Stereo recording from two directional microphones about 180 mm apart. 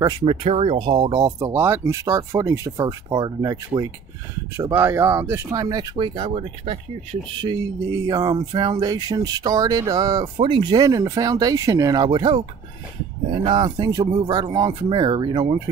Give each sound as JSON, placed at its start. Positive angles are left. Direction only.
{"t": 0.2, "sound": "speech", "side_deg": -30}
{"t": 7.3, "sound": "speech", "side_deg": -20}